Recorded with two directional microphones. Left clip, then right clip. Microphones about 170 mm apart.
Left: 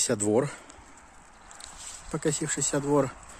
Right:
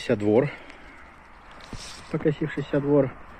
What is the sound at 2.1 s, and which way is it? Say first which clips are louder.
Speech: right 4 dB; 20° left (ahead or behind).